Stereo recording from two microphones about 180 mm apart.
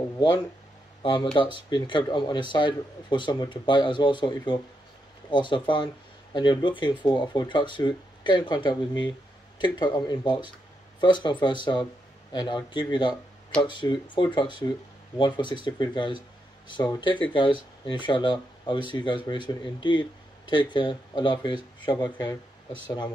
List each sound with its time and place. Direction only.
1.0 s speech: 25° left (ahead or behind)